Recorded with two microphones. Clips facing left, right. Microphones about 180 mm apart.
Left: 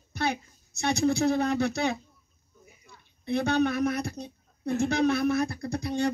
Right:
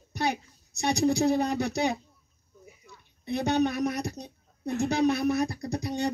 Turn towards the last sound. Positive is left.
turn(degrees=-20)  # may be behind; listen again after turning